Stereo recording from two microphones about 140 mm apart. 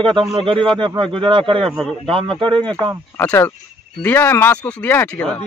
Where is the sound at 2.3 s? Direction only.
35° right (ahead or behind).